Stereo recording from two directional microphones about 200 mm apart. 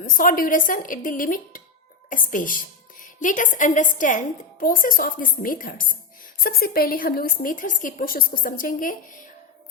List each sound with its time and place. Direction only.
0.0 s a woman's voice: 40° left (ahead or behind)